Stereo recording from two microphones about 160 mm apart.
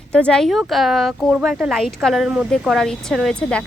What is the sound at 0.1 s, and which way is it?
Speech, 5° left (ahead or behind).